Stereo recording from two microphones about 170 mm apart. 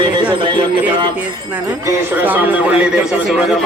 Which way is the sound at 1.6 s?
20° right (ahead or behind).